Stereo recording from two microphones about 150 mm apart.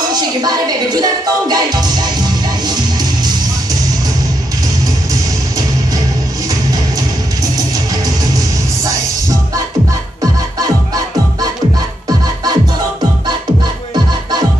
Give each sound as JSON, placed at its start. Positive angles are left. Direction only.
{"t": 0.1, "sound": "music", "side_deg": -25}